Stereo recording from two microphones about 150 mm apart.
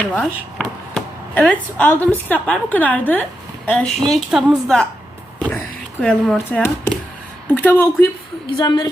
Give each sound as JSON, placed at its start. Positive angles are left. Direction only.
{"t": 0.0, "sound": "a woman's voice", "side_deg": 5}
{"t": 6.0, "sound": "speech", "side_deg": 10}
{"t": 7.4, "sound": "a sound", "side_deg": 15}
{"t": 8.4, "sound": "a woman's voice", "side_deg": 30}